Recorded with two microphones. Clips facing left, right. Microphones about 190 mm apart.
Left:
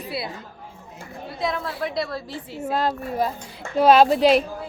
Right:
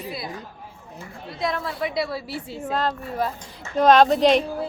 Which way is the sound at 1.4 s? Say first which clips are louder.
Even; centre (ahead or behind).